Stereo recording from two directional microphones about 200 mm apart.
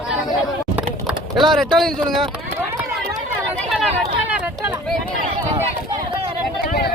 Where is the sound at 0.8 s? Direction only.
5° right (ahead or behind).